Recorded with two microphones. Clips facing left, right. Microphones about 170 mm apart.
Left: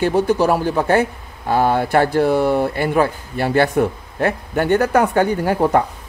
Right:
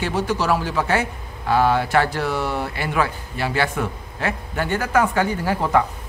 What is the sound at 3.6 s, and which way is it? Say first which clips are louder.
Speech: left 8 dB; 40° left (ahead or behind).